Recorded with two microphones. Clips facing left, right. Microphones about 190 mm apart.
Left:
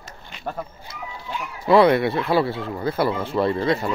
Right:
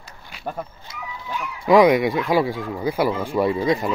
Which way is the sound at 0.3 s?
5° right (ahead or behind).